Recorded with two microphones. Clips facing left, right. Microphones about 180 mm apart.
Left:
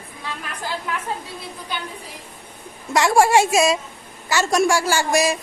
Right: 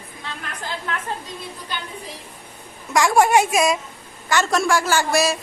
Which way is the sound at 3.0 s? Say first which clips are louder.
Even; 25° left (ahead or behind).